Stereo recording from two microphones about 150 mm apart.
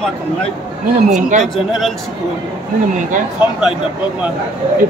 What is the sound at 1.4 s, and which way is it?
Speech, centre (ahead or behind).